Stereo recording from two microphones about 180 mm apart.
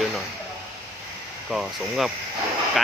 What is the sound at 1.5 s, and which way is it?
Speech, centre (ahead or behind).